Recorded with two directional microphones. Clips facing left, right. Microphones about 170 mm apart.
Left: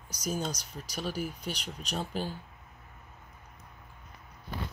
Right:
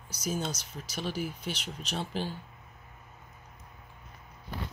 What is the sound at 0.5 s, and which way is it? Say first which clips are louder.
Speech: even; 40° left (ahead or behind).